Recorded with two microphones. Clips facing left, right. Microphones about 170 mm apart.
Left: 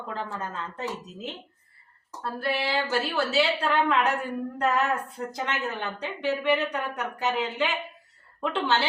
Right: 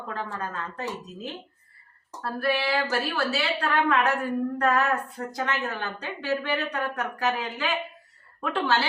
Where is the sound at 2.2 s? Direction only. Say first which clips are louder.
Right 2 dB; 25° left (ahead or behind).